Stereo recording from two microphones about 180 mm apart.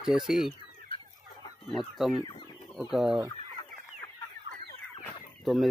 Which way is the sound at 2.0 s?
Centre (ahead or behind).